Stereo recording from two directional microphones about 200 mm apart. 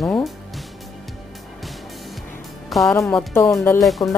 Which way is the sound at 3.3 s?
10° left (ahead or behind).